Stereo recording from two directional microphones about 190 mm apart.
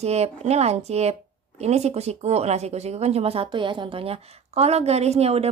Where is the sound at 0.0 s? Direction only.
35° right (ahead or behind).